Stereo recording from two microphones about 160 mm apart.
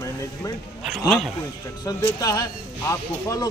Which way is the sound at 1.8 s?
20° left (ahead or behind).